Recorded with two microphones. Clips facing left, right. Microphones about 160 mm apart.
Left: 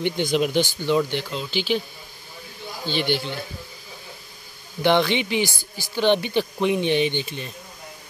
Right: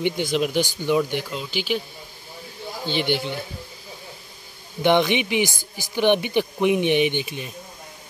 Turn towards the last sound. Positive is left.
turn(degrees=-15)  # may be behind; listen again after turning